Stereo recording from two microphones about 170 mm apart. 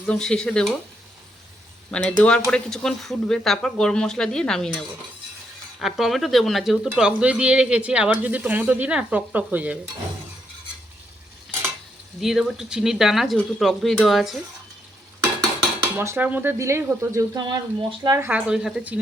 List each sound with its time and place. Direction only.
0.0 s speech: 5° left (ahead or behind)
1.9 s speech: 5° left (ahead or behind)
5.8 s speech: centre (ahead or behind)
12.2 s speech: centre (ahead or behind)
16.0 s speech: 15° right (ahead or behind)